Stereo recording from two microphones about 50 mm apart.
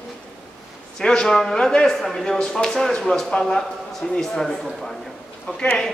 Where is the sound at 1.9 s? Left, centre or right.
Centre.